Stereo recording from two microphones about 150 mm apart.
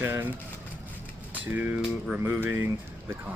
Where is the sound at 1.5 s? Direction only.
10° right (ahead or behind).